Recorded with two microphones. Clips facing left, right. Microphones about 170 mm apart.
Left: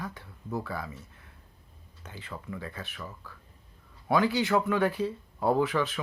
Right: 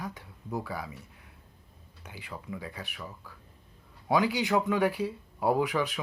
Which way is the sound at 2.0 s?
10° right (ahead or behind).